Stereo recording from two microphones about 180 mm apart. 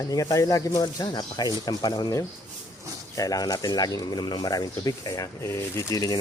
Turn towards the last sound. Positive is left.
turn(degrees=20)  # may be behind; listen again after turning